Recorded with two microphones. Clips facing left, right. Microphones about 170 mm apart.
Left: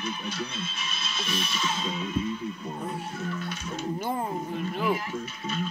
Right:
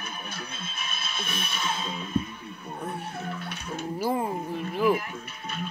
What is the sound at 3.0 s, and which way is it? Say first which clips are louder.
Speech: left 2 dB; 60° right (ahead or behind).